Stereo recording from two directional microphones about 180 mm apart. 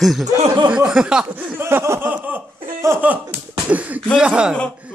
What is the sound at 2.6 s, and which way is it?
Laughter, 15° right (ahead or behind).